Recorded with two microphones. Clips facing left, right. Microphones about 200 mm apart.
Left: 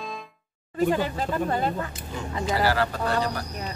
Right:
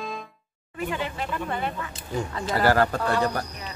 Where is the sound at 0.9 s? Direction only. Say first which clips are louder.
Left 4 dB; 35° left (ahead or behind).